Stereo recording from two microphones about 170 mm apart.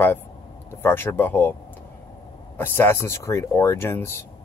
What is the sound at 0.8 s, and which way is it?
Speech, 15° left (ahead or behind).